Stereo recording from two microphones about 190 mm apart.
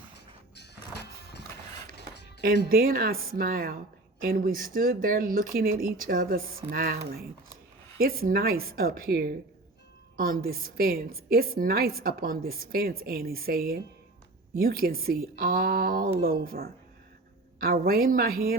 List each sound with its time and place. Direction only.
0.5 s music: 60° left (ahead or behind)
2.6 s a woman's voice: 50° right (ahead or behind)